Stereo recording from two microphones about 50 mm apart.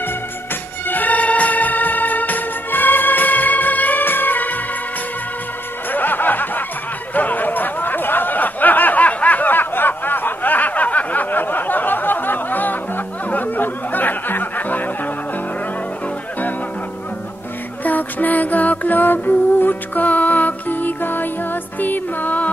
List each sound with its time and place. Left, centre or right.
0.8 s music: left
5.9 s music: left
7.2 s a sound: left
17.8 s music: left